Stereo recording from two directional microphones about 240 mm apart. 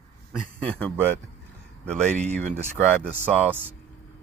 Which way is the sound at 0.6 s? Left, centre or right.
Centre.